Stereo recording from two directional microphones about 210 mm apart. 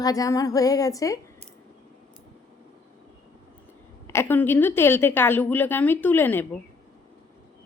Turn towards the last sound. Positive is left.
turn(degrees=10)  # may be behind; listen again after turning